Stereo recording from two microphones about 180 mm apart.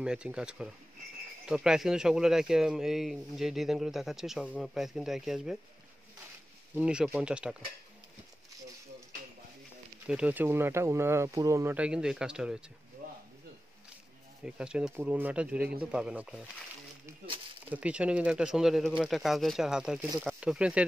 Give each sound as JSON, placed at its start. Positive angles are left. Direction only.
{"t": 0.0, "sound": "speech", "side_deg": -5}
{"t": 6.7, "sound": "speech", "side_deg": -5}
{"t": 10.0, "sound": "speech", "side_deg": -5}
{"t": 13.0, "sound": "a sound", "side_deg": -50}
{"t": 14.4, "sound": "speech", "side_deg": -5}
{"t": 17.6, "sound": "speech", "side_deg": -5}